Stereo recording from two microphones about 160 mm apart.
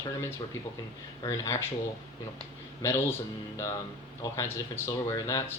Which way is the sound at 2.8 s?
15° left (ahead or behind).